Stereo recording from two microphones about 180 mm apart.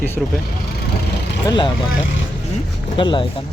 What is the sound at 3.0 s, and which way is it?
Speech, 25° left (ahead or behind).